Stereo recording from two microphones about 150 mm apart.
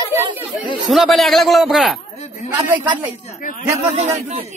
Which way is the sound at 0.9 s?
Centre (ahead or behind).